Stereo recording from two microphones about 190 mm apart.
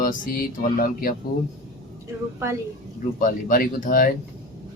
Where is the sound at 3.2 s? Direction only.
45° left (ahead or behind).